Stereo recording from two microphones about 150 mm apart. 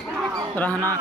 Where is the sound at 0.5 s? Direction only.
10° left (ahead or behind).